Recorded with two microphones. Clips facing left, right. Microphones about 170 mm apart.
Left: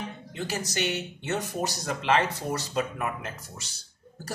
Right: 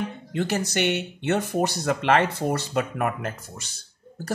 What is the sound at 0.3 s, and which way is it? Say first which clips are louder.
Speech: right 7 dB; 60° right (ahead or behind).